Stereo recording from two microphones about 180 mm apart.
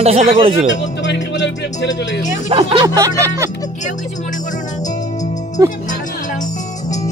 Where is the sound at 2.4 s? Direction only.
30° right (ahead or behind).